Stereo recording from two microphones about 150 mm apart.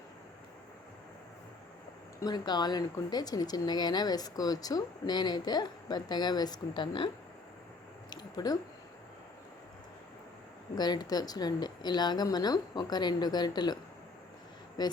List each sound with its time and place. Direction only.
2.2 s speech: 30° left (ahead or behind)
8.1 s squish: 30° left (ahead or behind)
10.8 s speech: 25° left (ahead or behind)
14.8 s speech: 25° left (ahead or behind)